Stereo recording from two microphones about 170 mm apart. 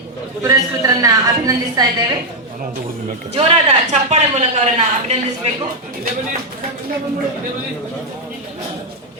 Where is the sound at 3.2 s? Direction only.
35° right (ahead or behind).